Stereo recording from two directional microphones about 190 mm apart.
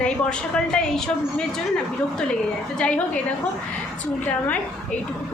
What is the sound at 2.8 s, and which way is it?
Speech, 5° left (ahead or behind).